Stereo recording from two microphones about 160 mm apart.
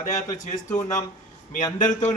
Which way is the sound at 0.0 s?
50° left (ahead or behind).